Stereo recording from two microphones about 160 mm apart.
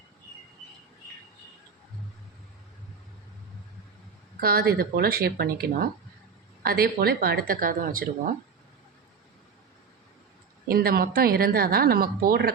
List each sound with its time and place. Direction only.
4.4 s a woman's voice: 70° right (ahead or behind)
10.7 s a woman's voice: 70° right (ahead or behind)